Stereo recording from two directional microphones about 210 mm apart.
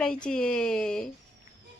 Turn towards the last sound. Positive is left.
turn(degrees=5)  # may be behind; listen again after turning